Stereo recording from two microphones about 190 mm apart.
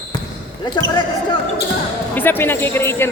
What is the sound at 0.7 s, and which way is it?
Speech, 25° left (ahead or behind).